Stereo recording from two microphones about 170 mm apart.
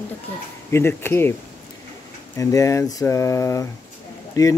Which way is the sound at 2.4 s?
20° left (ahead or behind).